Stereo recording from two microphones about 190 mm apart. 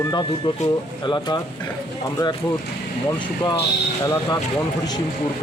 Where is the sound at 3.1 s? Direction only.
25° left (ahead or behind).